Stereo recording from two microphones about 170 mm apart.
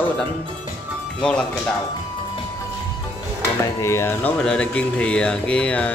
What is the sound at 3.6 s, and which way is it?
Speech, 15° left (ahead or behind).